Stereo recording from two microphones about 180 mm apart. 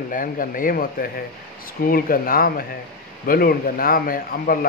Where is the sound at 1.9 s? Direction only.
55° left (ahead or behind).